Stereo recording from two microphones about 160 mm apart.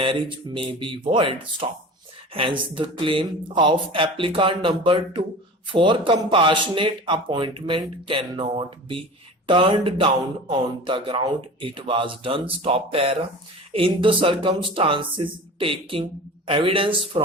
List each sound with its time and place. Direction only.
0.0 s speech: 30° right (ahead or behind)